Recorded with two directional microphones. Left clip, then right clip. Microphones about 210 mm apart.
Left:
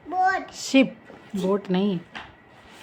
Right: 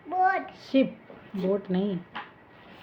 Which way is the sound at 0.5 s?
20° left (ahead or behind).